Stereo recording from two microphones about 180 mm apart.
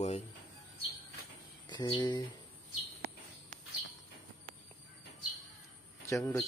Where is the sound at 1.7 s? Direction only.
25° left (ahead or behind).